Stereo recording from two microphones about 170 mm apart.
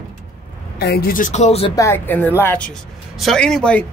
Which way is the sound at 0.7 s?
65° left (ahead or behind).